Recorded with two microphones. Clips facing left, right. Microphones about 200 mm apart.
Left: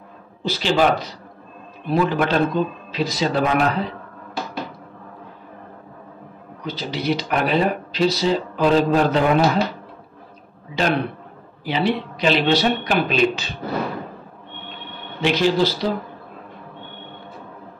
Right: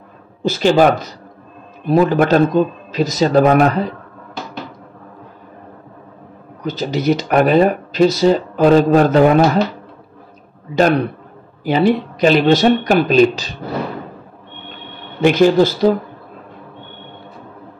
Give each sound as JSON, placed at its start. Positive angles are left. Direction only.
{"t": 0.4, "sound": "speech", "side_deg": -45}
{"t": 6.6, "sound": "speech", "side_deg": -45}
{"t": 10.7, "sound": "speech", "side_deg": -45}
{"t": 15.2, "sound": "speech", "side_deg": -50}